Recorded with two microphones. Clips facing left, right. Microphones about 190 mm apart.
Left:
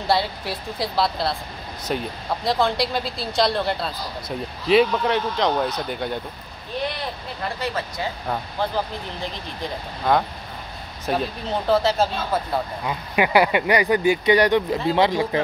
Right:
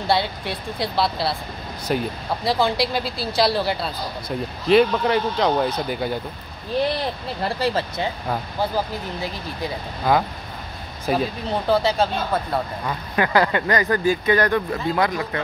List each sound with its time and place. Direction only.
0.0 s speech: centre (ahead or behind)
7.4 s speech: 30° right (ahead or behind)
8.3 s speech: 5° right (ahead or behind)
12.8 s speech: 15° left (ahead or behind)